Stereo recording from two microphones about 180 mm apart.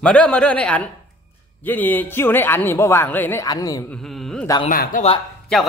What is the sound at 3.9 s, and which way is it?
Speech, 5° left (ahead or behind).